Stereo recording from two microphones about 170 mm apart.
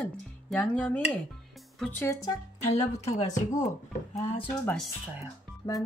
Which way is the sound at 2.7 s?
40° left (ahead or behind).